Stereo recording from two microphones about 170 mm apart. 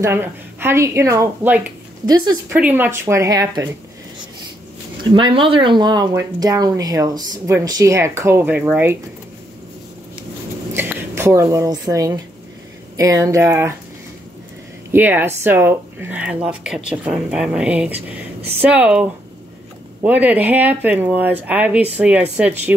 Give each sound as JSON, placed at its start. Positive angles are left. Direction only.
{"t": 0.0, "sound": "speech", "side_deg": -15}
{"t": 2.0, "sound": "speech", "side_deg": -25}
{"t": 2.5, "sound": "speech", "side_deg": -10}
{"t": 5.1, "sound": "speech", "side_deg": -30}
{"t": 10.7, "sound": "speech", "side_deg": -15}
{"t": 14.9, "sound": "speech", "side_deg": -10}